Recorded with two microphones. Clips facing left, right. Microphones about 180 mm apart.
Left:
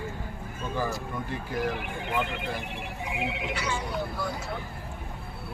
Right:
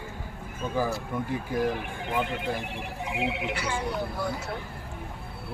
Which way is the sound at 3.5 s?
55° right (ahead or behind).